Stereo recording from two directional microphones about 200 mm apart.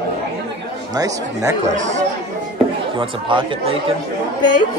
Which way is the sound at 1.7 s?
35° right (ahead or behind).